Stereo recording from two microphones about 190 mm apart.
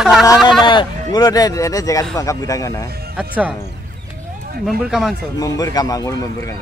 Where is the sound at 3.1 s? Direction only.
5° right (ahead or behind).